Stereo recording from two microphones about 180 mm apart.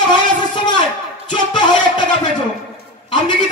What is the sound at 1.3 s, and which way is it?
Music, 25° left (ahead or behind).